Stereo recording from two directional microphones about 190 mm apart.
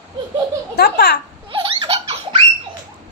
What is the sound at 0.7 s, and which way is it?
Speech, 55° left (ahead or behind).